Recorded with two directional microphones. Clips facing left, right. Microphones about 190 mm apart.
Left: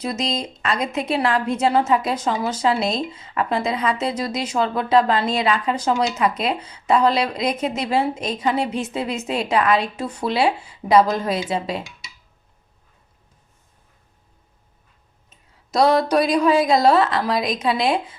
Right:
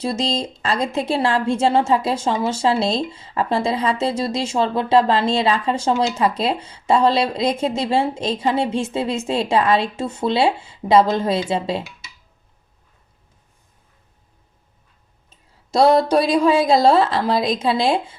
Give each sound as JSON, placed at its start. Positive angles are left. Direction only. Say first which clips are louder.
{"t": 0.0, "sound": "a woman's voice", "louder": "right 3 dB", "side_deg": -30}
{"t": 15.3, "sound": "a woman's voice", "louder": "right 3 dB", "side_deg": -30}